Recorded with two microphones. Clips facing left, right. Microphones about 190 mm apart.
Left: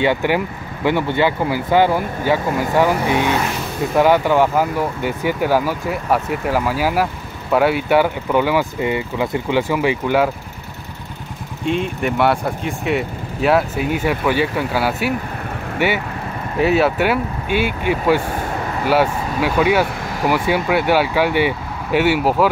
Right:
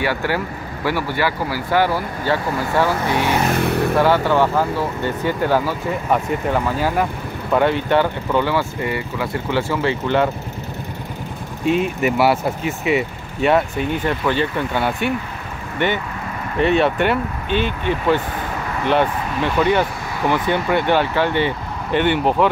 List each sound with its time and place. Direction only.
0.0 s speech: 20° left (ahead or behind)
3.5 s vehicle: 65° right (ahead or behind)
4.0 s speech: 15° left (ahead or behind)
11.6 s speech: 5° right (ahead or behind)